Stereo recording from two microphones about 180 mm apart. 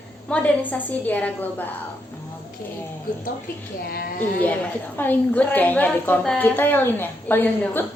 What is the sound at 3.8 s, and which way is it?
Speech, 60° left (ahead or behind).